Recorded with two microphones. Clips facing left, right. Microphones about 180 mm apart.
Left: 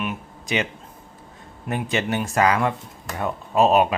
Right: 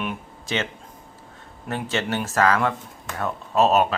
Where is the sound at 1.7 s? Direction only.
10° left (ahead or behind).